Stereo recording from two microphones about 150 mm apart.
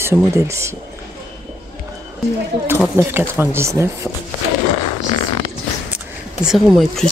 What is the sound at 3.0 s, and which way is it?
Speech, 15° right (ahead or behind).